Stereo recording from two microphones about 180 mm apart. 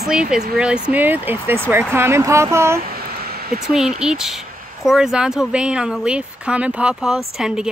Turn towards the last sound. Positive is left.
turn(degrees=-5)  # may be behind; listen again after turning